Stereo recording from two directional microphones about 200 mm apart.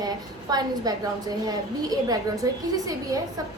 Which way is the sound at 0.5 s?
20° right (ahead or behind).